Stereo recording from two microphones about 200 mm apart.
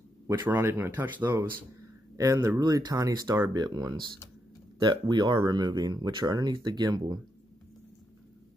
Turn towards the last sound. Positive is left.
turn(degrees=-20)  # may be behind; listen again after turning